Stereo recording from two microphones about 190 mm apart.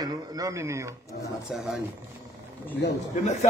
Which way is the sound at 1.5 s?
Centre (ahead or behind).